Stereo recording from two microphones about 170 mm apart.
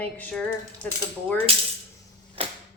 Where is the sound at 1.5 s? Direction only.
35° right (ahead or behind).